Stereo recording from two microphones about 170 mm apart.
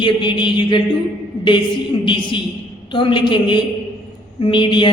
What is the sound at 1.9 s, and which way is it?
A woman's voice, 30° left (ahead or behind).